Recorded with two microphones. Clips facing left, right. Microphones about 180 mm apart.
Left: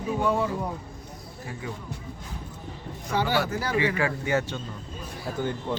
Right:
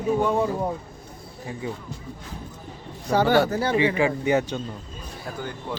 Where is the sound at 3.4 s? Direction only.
30° right (ahead or behind).